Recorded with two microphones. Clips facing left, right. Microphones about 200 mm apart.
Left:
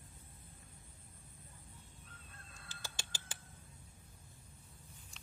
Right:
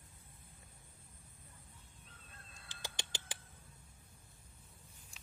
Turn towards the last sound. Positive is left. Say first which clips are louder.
# right 3 dB
turn(degrees=-15)  # may be behind; listen again after turning